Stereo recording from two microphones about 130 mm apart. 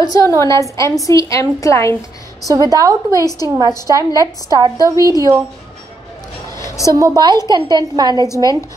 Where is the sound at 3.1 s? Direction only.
30° left (ahead or behind).